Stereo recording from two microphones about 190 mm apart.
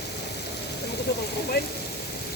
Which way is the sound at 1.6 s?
55° left (ahead or behind).